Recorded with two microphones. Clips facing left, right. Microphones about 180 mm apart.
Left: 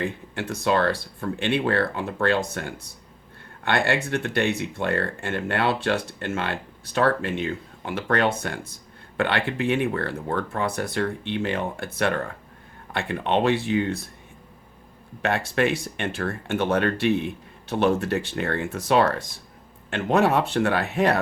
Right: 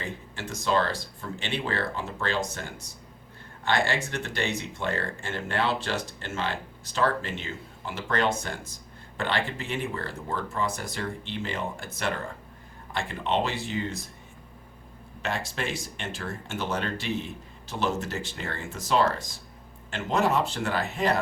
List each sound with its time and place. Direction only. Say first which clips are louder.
0.0 s speech: left 7 dB; 60° left (ahead or behind)
15.2 s speech: left 9 dB; 60° left (ahead or behind)